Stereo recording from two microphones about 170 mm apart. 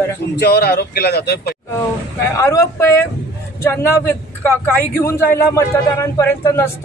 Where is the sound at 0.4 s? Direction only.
70° left (ahead or behind).